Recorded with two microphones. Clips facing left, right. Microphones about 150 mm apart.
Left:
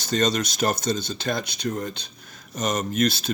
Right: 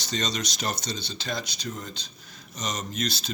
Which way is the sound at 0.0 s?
50° left (ahead or behind).